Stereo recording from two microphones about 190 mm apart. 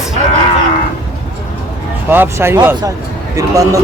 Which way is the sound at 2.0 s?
10° right (ahead or behind).